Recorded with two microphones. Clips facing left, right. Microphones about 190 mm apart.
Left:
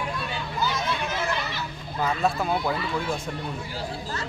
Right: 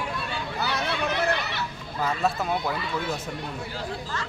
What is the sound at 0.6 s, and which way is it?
Chatter, 65° right (ahead or behind).